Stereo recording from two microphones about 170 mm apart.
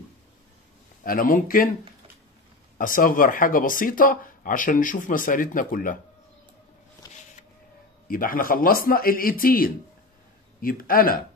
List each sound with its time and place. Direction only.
1.0 s speech: 55° left (ahead or behind)
2.8 s speech: 55° left (ahead or behind)
8.1 s speech: 55° left (ahead or behind)